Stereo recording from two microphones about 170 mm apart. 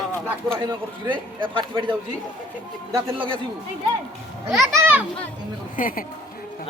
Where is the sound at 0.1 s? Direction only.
5° left (ahead or behind).